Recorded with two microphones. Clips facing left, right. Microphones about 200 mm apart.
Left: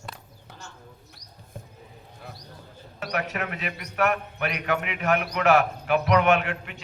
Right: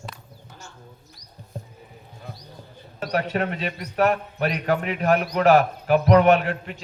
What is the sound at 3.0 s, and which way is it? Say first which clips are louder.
A man's voice: right 5 dB; 30° right (ahead or behind).